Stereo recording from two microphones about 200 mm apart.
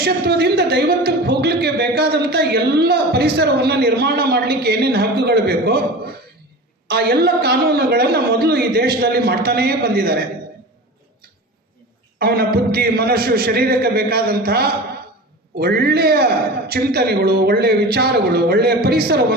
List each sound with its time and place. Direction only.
0.0 s a woman's voice: 55° right (ahead or behind)
12.2 s a woman's voice: 50° right (ahead or behind)